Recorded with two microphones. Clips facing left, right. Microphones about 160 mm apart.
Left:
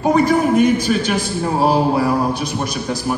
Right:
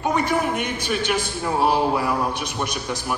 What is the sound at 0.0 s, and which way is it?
A man's voice, 35° left (ahead or behind).